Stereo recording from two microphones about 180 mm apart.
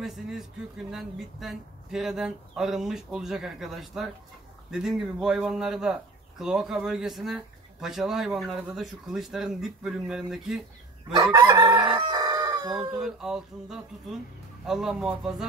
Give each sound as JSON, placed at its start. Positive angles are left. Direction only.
{"t": 0.0, "sound": "speech", "side_deg": 0}
{"t": 11.3, "sound": "chicken", "side_deg": -20}
{"t": 12.7, "sound": "speech", "side_deg": -5}